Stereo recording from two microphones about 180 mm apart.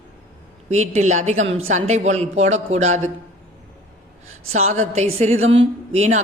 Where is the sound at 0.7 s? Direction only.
40° right (ahead or behind).